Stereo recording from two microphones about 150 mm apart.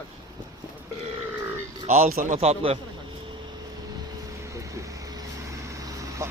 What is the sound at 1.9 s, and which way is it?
Speech, 50° right (ahead or behind).